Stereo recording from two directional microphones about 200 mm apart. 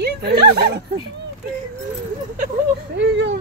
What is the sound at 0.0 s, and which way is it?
Speech, 55° right (ahead or behind).